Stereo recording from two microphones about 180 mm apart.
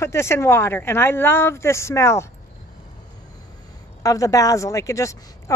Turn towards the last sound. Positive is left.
turn(degrees=15)  # may be behind; listen again after turning